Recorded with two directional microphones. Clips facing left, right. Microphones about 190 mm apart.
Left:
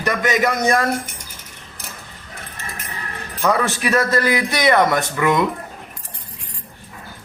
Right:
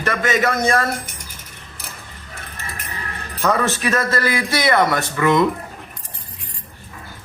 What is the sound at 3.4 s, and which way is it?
A man's voice, 15° left (ahead or behind).